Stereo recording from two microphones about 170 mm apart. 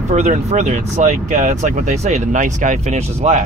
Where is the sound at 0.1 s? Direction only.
45° right (ahead or behind).